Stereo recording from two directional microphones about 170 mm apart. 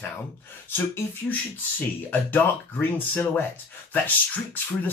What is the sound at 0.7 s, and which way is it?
Speech, 10° left (ahead or behind).